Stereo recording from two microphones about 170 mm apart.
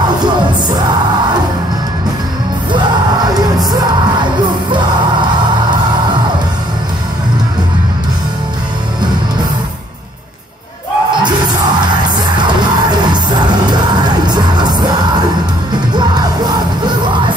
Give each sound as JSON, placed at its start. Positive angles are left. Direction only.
{"t": 11.2, "sound": "music", "side_deg": -25}
{"t": 13.1, "sound": "music", "side_deg": -25}
{"t": 15.9, "sound": "music", "side_deg": -25}